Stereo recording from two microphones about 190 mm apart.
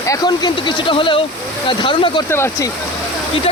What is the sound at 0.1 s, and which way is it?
Speech, 20° left (ahead or behind).